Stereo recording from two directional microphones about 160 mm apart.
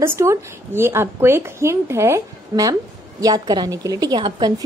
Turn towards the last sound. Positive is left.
turn(degrees=-25)  # may be behind; listen again after turning